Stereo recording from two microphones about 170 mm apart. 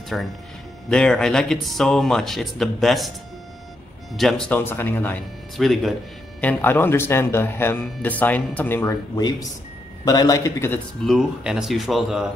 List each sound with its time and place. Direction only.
0.1 s speech: centre (ahead or behind)
4.2 s speech: 5° left (ahead or behind)
5.6 s speech: centre (ahead or behind)
6.4 s a man's voice: 10° left (ahead or behind)
11.1 s speech: 5° right (ahead or behind)